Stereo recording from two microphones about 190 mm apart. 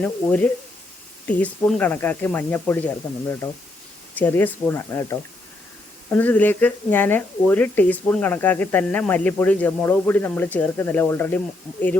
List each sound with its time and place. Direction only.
0.0 s speech: 10° left (ahead or behind)